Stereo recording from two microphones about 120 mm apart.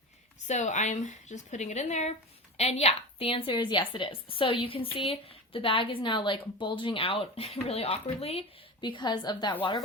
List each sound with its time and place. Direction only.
0.4 s a woman's voice: 80° left
2.6 s a woman's voice: 65° left (ahead or behind)
8.8 s a woman's voice: 40° left (ahead or behind)